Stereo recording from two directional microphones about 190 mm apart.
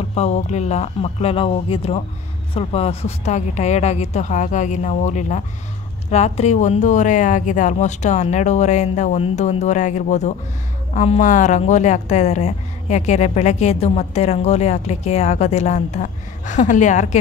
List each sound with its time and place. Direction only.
0.1 s a woman's voice: 35° left (ahead or behind)